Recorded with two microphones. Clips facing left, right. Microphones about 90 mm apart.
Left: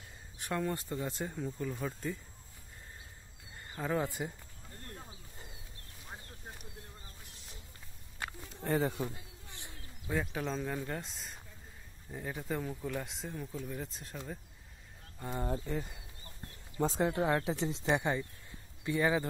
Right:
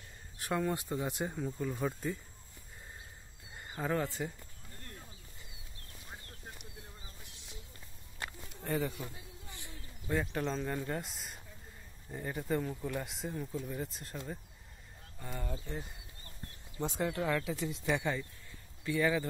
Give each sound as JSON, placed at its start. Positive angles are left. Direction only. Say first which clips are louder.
{"t": 0.4, "sound": "speech", "louder": "right 1 dB", "side_deg": -5}
{"t": 0.7, "sound": "speech", "louder": "right 2 dB", "side_deg": -15}
{"t": 3.5, "sound": "a sound", "louder": "right 1 dB", "side_deg": -10}
{"t": 3.9, "sound": "speech", "louder": "left 1 dB", "side_deg": 15}
{"t": 7.2, "sound": "a sound", "louder": "right 1 dB", "side_deg": 40}
{"t": 8.5, "sound": "speech", "louder": "left 3 dB", "side_deg": 85}
{"t": 8.8, "sound": "speech", "louder": "left 4 dB", "side_deg": 35}
{"t": 9.5, "sound": "bird", "louder": "even", "side_deg": 20}
{"t": 10.0, "sound": "speech", "louder": "right 1 dB", "side_deg": 5}
{"t": 15.4, "sound": "speech", "louder": "left 7 dB", "side_deg": 40}